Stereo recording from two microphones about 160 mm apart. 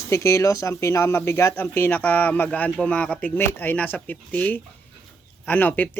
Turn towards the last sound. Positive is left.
turn(degrees=10)  # may be behind; listen again after turning